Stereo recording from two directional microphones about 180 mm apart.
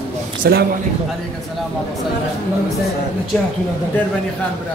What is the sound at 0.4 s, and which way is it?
Speech, 60° right (ahead or behind).